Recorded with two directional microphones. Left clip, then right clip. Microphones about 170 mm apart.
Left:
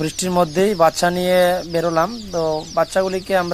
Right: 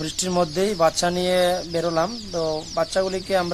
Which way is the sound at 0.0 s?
20° left (ahead or behind).